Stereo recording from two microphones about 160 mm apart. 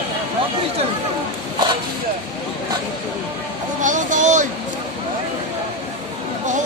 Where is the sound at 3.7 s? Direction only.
55° right (ahead or behind).